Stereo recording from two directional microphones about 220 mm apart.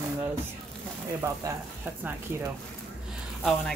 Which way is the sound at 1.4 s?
15° right (ahead or behind).